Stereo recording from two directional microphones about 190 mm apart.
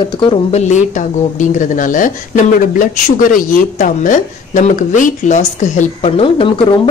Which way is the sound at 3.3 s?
45° left (ahead or behind).